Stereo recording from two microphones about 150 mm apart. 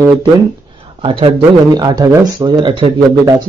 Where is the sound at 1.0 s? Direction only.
35° right (ahead or behind).